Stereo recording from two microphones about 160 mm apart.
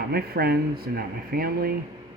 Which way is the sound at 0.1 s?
75° right (ahead or behind).